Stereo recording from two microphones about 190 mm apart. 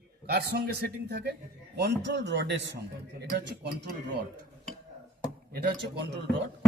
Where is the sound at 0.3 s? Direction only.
55° right (ahead or behind).